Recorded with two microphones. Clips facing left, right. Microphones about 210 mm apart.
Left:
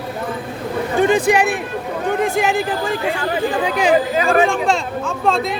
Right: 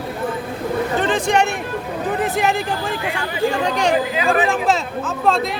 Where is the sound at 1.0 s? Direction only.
10° left (ahead or behind).